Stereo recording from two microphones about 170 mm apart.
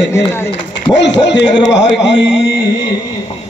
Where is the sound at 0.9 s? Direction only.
90° left.